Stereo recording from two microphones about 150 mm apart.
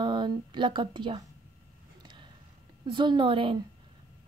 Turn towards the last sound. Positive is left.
turn(degrees=-35)  # may be behind; listen again after turning